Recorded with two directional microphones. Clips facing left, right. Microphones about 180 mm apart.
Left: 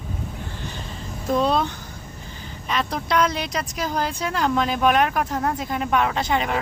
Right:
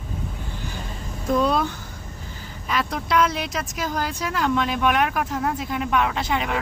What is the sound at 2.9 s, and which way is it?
Speech, 5° right (ahead or behind).